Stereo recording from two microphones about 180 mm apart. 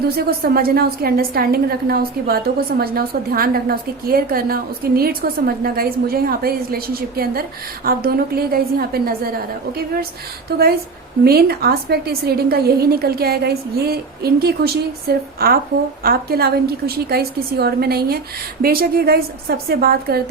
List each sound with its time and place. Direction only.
0.2 s a woman's voice: 55° right (ahead or behind)
11.2 s a woman's voice: 60° right (ahead or behind)